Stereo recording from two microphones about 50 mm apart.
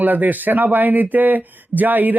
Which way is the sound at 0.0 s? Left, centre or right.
Right.